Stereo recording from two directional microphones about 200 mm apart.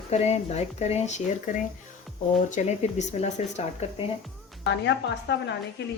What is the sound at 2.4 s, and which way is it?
A woman's voice, 35° left (ahead or behind).